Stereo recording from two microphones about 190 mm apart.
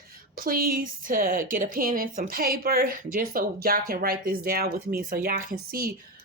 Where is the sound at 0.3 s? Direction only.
50° right (ahead or behind).